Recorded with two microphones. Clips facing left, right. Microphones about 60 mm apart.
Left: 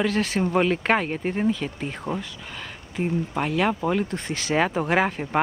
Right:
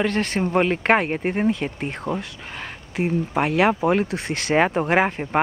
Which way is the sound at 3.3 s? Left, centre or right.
Right.